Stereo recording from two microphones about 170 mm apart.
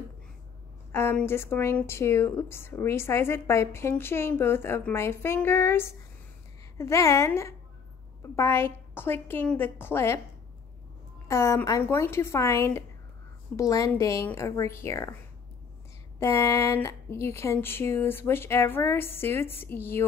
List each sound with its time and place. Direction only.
0.9 s a woman's voice: 15° left (ahead or behind)
11.2 s a woman's voice: 15° left (ahead or behind)
16.2 s a woman's voice: 15° left (ahead or behind)